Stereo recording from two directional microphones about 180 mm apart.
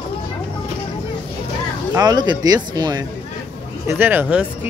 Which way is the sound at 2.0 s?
25° right (ahead or behind).